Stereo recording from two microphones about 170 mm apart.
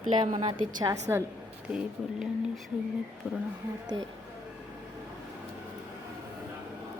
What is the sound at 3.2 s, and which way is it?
Speech, 10° right (ahead or behind).